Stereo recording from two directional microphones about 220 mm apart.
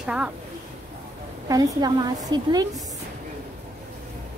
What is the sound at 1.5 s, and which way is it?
A woman's voice, 15° right (ahead or behind).